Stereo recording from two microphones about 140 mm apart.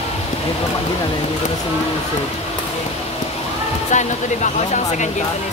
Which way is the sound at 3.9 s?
60° left (ahead or behind).